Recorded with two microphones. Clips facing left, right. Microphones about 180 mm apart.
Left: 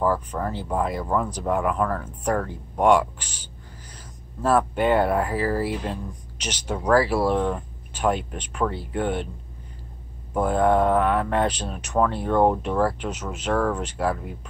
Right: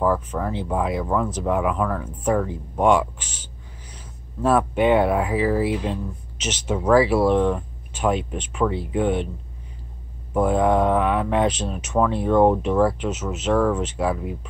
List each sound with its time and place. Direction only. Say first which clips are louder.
0.0 s speech: right 2 dB; centre (ahead or behind)
4.5 s speech: right 2 dB; 5° right (ahead or behind)
7.1 s speech: right 4 dB; 5° left (ahead or behind)
10.3 s speech: right 1 dB; 5° right (ahead or behind)